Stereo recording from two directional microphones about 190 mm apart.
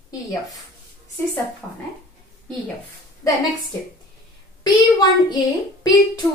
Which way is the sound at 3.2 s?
15° left (ahead or behind).